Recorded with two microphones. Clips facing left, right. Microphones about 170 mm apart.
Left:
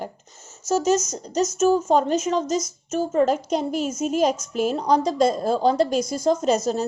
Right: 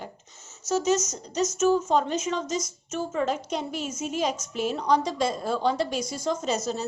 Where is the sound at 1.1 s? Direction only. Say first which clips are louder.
Left 4 dB; 35° left (ahead or behind).